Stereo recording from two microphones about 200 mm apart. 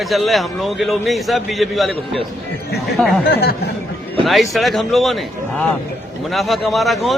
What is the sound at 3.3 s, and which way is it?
Speech, 55° left (ahead or behind).